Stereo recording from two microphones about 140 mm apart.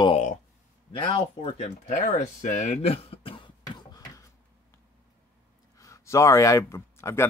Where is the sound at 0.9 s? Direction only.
40° left (ahead or behind).